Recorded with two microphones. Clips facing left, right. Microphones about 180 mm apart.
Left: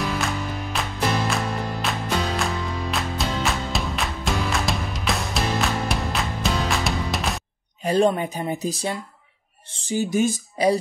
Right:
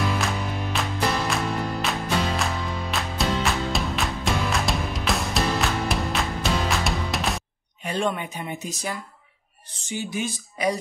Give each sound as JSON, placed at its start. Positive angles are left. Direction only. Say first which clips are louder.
{"t": 0.0, "sound": "music", "louder": "even", "side_deg": 0}
{"t": 7.8, "sound": "speech", "louder": "left 7 dB", "side_deg": 40}